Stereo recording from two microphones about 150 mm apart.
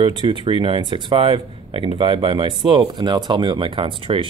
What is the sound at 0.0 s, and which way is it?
Speech, 35° right (ahead or behind).